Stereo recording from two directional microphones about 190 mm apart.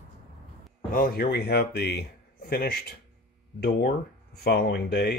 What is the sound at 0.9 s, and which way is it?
Speech, 50° left (ahead or behind).